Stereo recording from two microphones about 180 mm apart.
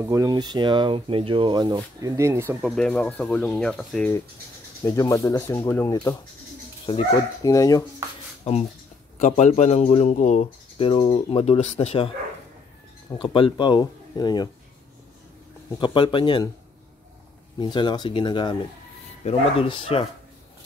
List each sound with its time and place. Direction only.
0.0 s speech: 20° right (ahead or behind)
2.6 s speech: centre (ahead or behind)
4.8 s speech: 20° left (ahead or behind)
7.1 s speech: 20° left (ahead or behind)
8.5 s speech: 35° left (ahead or behind)
13.1 s speech: 30° left (ahead or behind)
15.8 s speech: 25° left (ahead or behind)
17.6 s speech: 25° left (ahead or behind)